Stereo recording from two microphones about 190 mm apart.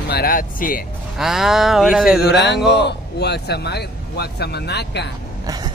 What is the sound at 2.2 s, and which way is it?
Speech, 60° left (ahead or behind).